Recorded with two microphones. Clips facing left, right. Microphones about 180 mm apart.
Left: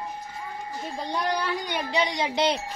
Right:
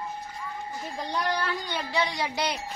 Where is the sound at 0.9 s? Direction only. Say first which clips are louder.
Left 1 dB; 10° left (ahead or behind).